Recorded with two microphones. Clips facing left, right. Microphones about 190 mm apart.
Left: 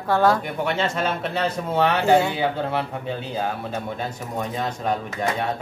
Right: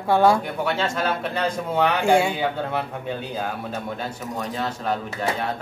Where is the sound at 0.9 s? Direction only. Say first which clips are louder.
Even; 5° left (ahead or behind).